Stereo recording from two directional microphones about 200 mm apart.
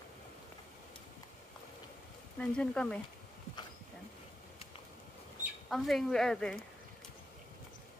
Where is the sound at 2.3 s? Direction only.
5° left (ahead or behind).